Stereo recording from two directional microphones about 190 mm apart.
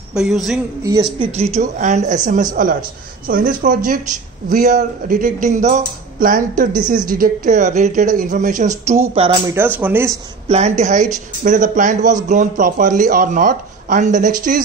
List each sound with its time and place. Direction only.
0.1 s speech: centre (ahead or behind)
1.2 s speech: 35° right (ahead or behind)
9.5 s speech: 10° right (ahead or behind)
10.5 s speech: 35° right (ahead or behind)